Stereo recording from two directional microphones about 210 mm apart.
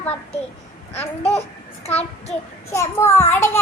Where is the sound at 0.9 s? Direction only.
30° left (ahead or behind).